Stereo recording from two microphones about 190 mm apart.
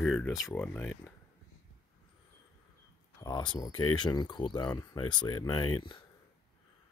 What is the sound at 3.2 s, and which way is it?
Speech, 25° left (ahead or behind).